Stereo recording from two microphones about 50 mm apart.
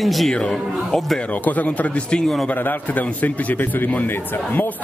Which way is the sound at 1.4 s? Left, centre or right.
Left.